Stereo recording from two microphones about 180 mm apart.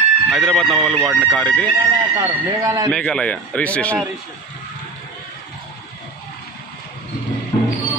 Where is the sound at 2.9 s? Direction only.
5° left (ahead or behind).